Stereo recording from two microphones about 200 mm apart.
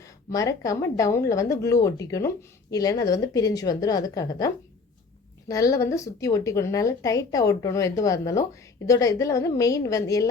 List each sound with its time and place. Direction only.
0.3 s speech: 15° left (ahead or behind)